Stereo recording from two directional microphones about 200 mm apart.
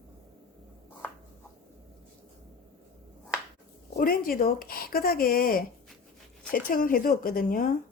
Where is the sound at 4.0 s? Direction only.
45° left (ahead or behind).